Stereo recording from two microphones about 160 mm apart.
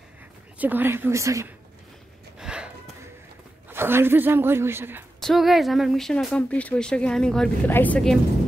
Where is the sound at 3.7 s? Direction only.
15° right (ahead or behind).